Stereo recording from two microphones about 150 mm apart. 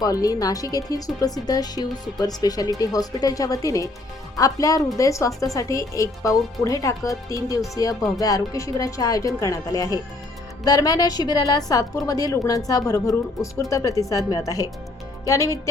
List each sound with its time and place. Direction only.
0.0 s speech: 25° left (ahead or behind)